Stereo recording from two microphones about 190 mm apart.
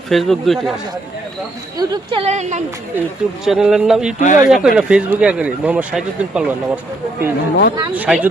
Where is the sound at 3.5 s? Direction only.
Centre (ahead or behind).